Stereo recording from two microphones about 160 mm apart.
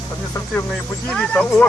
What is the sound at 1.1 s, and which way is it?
Speech, 5° left (ahead or behind).